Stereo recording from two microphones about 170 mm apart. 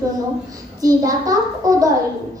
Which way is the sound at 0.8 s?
20° right (ahead or behind).